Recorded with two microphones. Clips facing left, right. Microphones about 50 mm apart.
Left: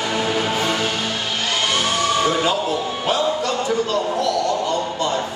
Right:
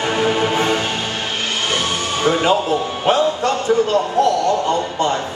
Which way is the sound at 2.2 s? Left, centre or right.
Right.